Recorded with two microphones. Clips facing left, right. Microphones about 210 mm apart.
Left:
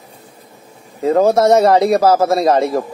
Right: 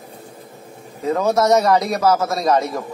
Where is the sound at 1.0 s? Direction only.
30° left (ahead or behind).